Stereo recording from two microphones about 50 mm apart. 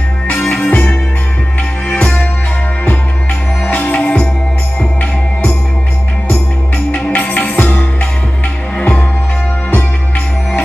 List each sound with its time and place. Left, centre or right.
0.5 s music: left
3.6 s music: left
6.9 s music: left